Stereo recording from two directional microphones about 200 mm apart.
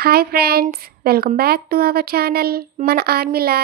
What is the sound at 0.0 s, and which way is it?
A woman's voice, 50° right (ahead or behind).